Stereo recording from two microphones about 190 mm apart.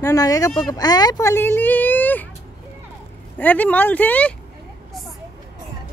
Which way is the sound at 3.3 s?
10° left (ahead or behind).